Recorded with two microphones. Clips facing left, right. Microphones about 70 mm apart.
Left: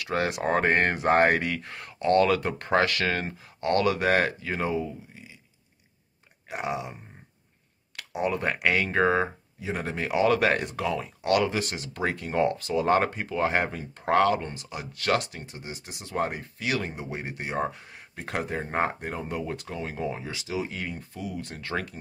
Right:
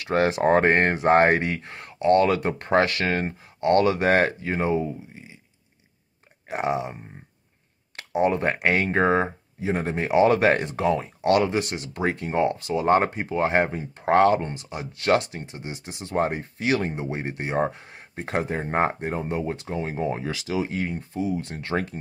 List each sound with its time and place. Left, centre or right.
0.0 s speech: right
0.8 s speech: right
6.5 s speech: right